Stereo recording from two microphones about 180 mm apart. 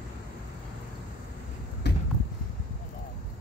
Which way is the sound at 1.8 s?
70° left (ahead or behind).